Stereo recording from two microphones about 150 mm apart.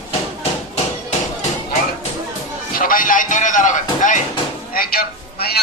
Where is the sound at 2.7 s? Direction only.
70° left (ahead or behind).